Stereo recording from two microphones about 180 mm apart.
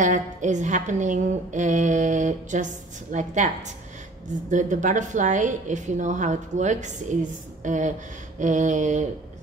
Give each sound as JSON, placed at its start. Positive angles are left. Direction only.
{"t": 0.0, "sound": "a woman's voice", "side_deg": -40}